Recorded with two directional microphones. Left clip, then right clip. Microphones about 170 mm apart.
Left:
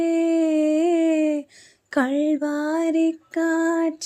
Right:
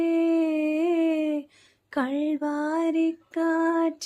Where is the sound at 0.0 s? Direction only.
35° left (ahead or behind).